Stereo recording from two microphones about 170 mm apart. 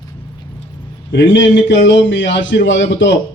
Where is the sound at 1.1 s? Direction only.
90° left.